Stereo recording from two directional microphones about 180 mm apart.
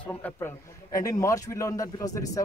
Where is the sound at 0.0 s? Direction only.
10° left (ahead or behind).